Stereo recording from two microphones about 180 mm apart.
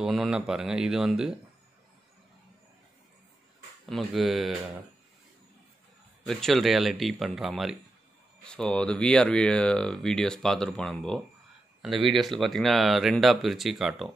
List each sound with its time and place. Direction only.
0.0 s speech: centre (ahead or behind)
3.8 s speech: centre (ahead or behind)
6.2 s speech: centre (ahead or behind)